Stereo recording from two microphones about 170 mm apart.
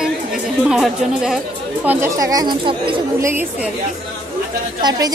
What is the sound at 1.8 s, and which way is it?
Speech, 15° right (ahead or behind).